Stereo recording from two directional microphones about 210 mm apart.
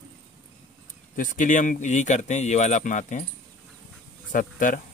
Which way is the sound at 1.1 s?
40° left (ahead or behind).